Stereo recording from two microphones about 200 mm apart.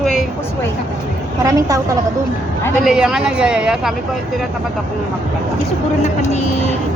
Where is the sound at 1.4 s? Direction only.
15° right (ahead or behind).